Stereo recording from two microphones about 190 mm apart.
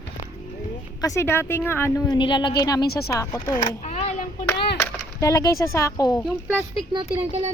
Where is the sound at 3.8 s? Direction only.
35° left (ahead or behind).